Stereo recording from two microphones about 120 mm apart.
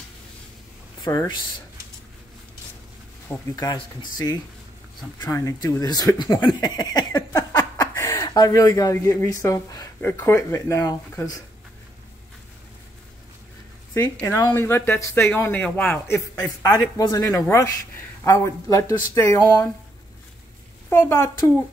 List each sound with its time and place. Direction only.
1.0 s speech: 35° left (ahead or behind)
3.3 s speech: 20° left (ahead or behind)
3.7 s speech: 35° left (ahead or behind)
13.9 s speech: 25° left (ahead or behind)
16.9 s speech: 25° left (ahead or behind)
20.9 s speech: 20° left (ahead or behind)